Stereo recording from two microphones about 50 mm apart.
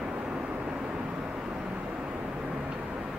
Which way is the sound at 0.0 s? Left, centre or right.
Right.